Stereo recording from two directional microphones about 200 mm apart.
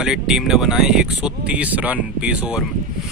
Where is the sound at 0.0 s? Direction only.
Centre (ahead or behind).